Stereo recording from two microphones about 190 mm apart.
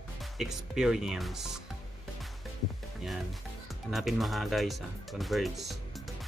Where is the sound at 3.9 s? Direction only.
Centre (ahead or behind).